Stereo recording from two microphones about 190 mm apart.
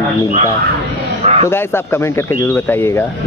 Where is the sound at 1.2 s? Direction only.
35° right (ahead or behind).